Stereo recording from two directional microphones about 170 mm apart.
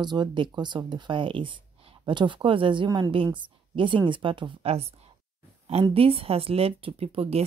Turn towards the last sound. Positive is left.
turn(degrees=-35)  # may be behind; listen again after turning